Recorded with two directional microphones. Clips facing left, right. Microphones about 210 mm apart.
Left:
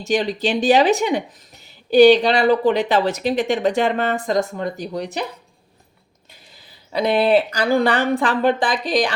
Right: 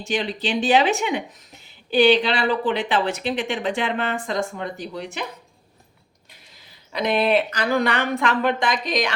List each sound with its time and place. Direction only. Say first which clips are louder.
0.0 s speech: left 5 dB; 40° left (ahead or behind)
6.9 s speech: left 4 dB; 30° left (ahead or behind)